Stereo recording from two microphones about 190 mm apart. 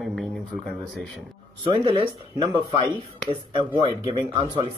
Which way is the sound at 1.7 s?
25° right (ahead or behind).